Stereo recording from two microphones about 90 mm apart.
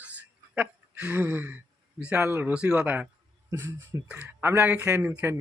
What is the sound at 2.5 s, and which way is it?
Speech, 10° right (ahead or behind).